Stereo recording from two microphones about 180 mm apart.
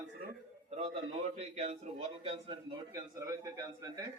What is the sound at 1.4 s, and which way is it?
Speech, 40° right (ahead or behind).